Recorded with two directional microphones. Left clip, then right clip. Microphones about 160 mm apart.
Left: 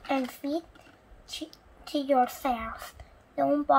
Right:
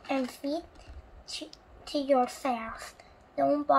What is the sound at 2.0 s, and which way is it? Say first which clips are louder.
A woman's voice: left 2 dB; 10° right (ahead or behind).